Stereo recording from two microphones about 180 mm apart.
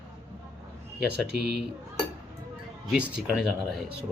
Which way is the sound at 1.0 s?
65° right (ahead or behind).